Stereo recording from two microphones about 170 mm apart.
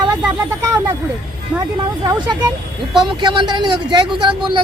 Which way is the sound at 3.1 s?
25° right (ahead or behind).